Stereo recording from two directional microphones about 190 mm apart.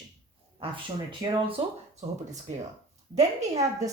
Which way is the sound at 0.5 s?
25° right (ahead or behind).